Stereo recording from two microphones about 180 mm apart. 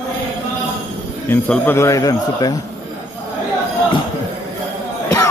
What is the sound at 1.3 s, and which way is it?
A man's voice, 10° left (ahead or behind).